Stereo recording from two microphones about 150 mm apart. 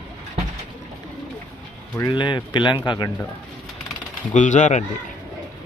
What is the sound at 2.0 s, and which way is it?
Speech, 30° left (ahead or behind).